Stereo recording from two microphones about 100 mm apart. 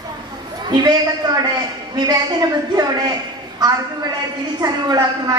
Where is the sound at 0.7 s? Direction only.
45° right (ahead or behind).